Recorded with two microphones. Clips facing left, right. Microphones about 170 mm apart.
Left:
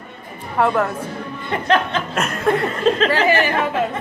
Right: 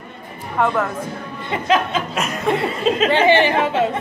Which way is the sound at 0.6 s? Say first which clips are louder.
Left 1 dB; 10° left (ahead or behind).